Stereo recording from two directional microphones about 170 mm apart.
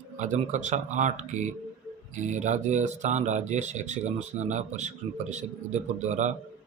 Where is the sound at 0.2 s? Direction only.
45° right (ahead or behind).